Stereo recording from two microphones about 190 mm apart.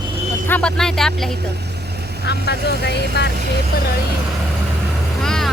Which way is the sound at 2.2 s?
60° left (ahead or behind).